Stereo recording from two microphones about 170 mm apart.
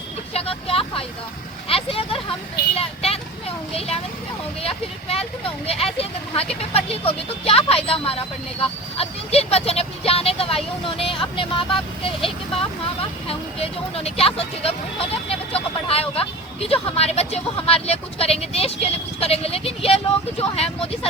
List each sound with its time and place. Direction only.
0.3 s speech: 35° left (ahead or behind)